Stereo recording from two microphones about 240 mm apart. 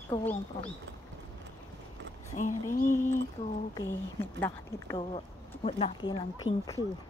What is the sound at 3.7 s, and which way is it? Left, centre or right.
A woman's voice, centre.